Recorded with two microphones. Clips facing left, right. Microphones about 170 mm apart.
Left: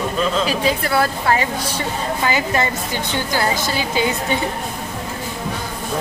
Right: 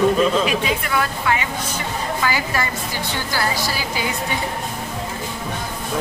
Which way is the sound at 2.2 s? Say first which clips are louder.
Left 4 dB; 25° left (ahead or behind).